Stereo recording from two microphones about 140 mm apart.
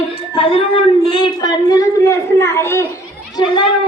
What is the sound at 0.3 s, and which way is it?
A woman's voice, 40° left (ahead or behind).